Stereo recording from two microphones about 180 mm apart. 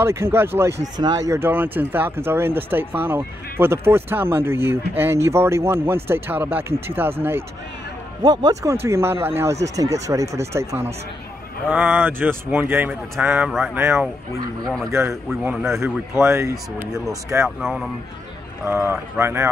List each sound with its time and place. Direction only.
0.0 s a man's voice: 15° right (ahead or behind)
15.2 s speech: 5° right (ahead or behind)
17.6 s speech: centre (ahead or behind)
18.7 s speech: 15° right (ahead or behind)